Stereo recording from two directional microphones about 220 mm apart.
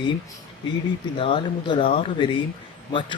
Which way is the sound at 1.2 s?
20° left (ahead or behind).